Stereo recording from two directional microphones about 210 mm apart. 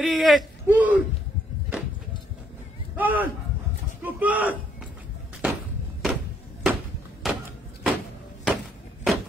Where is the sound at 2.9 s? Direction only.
10° right (ahead or behind).